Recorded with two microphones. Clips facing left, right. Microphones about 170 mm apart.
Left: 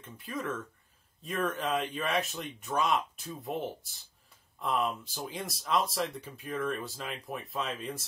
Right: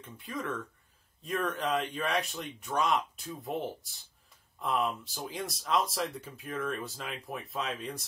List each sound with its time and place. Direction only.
0.0 s speech: centre (ahead or behind)